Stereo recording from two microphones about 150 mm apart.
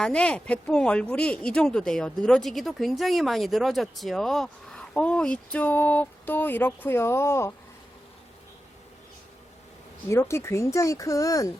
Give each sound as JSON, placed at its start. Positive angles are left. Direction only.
{"t": 0.0, "sound": "speech", "side_deg": 5}
{"t": 10.1, "sound": "speech", "side_deg": 20}